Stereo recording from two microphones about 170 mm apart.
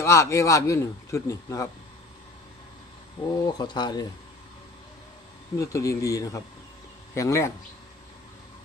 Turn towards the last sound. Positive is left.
turn(degrees=20)  # may be behind; listen again after turning